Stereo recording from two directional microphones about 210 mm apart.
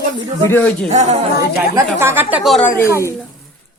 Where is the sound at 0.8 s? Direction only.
30° right (ahead or behind).